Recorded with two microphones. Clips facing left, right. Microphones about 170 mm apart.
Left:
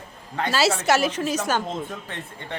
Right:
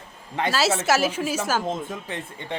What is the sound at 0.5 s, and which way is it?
Speech, centre (ahead or behind).